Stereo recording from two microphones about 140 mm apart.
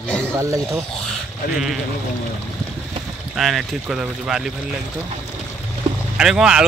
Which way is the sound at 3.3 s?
Centre (ahead or behind).